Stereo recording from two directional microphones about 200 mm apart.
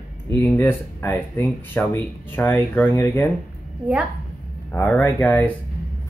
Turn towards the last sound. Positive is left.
turn(degrees=10)  # may be behind; listen again after turning